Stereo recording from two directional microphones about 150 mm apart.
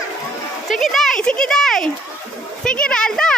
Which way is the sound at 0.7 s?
Centre (ahead or behind).